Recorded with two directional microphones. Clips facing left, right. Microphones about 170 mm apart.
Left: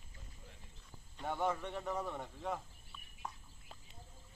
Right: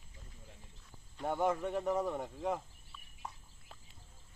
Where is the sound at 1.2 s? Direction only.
15° right (ahead or behind).